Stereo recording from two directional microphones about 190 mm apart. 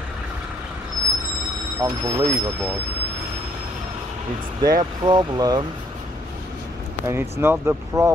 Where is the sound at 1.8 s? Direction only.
20° right (ahead or behind).